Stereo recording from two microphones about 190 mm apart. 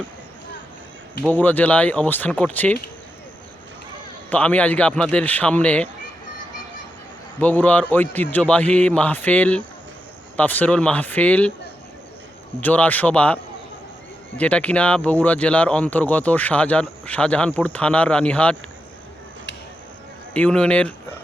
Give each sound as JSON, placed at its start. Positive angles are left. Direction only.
{"t": 1.3, "sound": "speech", "side_deg": 10}
{"t": 4.3, "sound": "speech", "side_deg": 5}
{"t": 7.3, "sound": "speech", "side_deg": 10}
{"t": 12.5, "sound": "speech", "side_deg": 5}
{"t": 20.3, "sound": "a man's voice", "side_deg": 5}